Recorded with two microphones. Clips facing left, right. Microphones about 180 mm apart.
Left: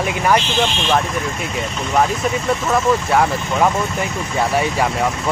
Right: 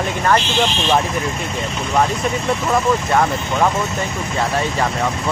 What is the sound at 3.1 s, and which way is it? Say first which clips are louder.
Speech: left 1 dB; 5° left (ahead or behind).